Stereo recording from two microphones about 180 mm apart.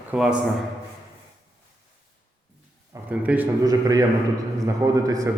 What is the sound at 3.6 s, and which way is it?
A man's voice, 20° right (ahead or behind).